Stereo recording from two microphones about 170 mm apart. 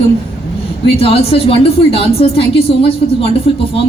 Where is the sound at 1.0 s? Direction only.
35° left (ahead or behind).